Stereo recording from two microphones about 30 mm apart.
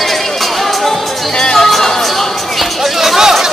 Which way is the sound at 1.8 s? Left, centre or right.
Centre.